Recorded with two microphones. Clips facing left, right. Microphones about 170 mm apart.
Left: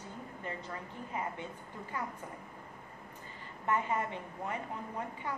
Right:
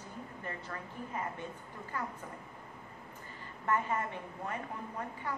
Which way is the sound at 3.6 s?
20° left (ahead or behind).